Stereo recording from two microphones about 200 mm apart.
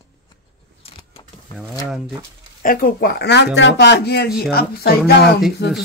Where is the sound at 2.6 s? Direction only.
45° left (ahead or behind).